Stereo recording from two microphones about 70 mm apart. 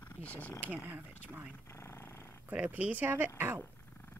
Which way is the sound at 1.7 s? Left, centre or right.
Left.